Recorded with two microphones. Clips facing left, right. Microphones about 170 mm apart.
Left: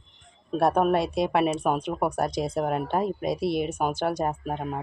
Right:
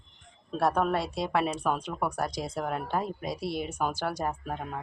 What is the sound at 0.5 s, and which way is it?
Speech, 20° left (ahead or behind).